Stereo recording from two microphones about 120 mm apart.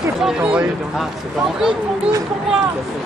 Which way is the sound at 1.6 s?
5° right (ahead or behind).